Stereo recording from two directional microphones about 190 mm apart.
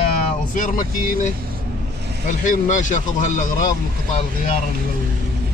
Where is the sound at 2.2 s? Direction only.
45° left (ahead or behind).